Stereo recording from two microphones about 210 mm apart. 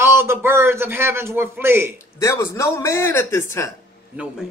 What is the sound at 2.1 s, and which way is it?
A man's voice, 15° left (ahead or behind).